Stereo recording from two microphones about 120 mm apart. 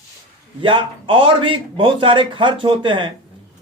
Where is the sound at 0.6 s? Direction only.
45° right (ahead or behind).